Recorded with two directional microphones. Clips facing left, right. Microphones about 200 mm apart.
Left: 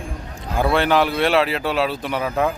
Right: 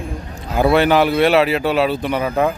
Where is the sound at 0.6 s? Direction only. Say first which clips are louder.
Right 4 dB; 5° right (ahead or behind).